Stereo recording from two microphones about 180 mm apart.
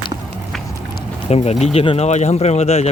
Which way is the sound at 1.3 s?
35° left (ahead or behind).